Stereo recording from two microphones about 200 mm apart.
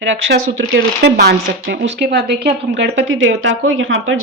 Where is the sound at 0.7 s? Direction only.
60° right (ahead or behind).